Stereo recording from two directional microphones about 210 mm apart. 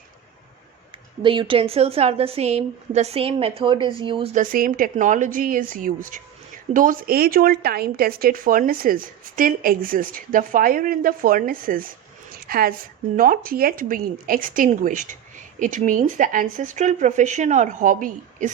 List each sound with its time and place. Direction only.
1.2 s a woman's voice: 25° right (ahead or behind)
4.4 s speech: 40° right (ahead or behind)
12.3 s a sound: 45° right (ahead or behind)
13.1 s speech: 40° right (ahead or behind)